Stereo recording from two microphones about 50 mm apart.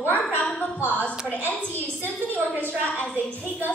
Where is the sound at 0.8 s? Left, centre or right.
Left.